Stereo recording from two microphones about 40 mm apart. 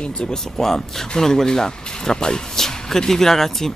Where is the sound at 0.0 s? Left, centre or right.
Left.